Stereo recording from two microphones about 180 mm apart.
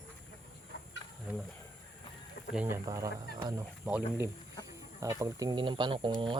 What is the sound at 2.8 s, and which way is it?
Speech, 15° right (ahead or behind).